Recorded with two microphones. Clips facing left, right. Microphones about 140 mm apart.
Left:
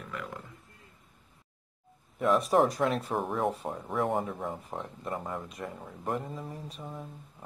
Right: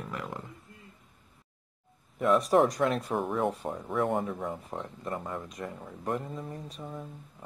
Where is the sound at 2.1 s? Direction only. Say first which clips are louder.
Right 1 dB; centre (ahead or behind).